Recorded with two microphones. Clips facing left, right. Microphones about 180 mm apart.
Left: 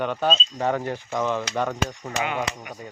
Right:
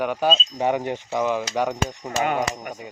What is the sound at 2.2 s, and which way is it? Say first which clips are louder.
Speech: right 4 dB; 45° right (ahead or behind).